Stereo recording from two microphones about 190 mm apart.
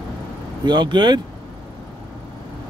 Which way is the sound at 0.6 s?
25° right (ahead or behind).